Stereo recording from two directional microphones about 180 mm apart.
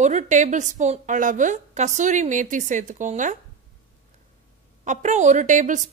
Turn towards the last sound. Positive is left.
turn(degrees=-45)  # may be behind; listen again after turning